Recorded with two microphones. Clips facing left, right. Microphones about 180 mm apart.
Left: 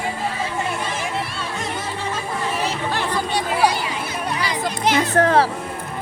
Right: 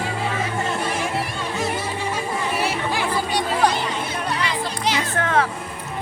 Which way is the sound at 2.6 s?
10° right (ahead or behind).